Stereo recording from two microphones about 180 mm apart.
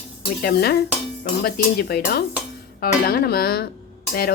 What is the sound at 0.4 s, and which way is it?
A woman's voice, 60° left (ahead or behind).